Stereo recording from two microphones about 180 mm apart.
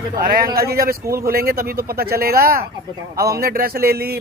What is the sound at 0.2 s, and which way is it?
Speech, 55° right (ahead or behind).